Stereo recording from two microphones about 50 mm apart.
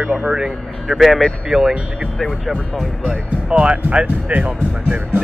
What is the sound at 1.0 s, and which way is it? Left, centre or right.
Speech, centre.